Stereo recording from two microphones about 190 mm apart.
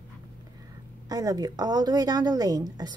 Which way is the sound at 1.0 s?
20° right (ahead or behind).